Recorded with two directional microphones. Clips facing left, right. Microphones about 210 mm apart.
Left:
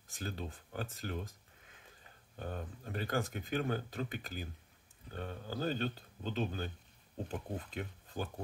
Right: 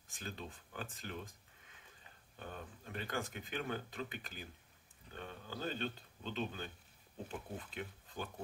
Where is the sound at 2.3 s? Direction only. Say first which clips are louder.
Left 6 dB; 40° left (ahead or behind).